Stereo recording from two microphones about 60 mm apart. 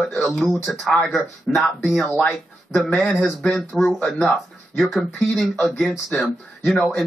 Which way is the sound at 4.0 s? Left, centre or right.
Centre.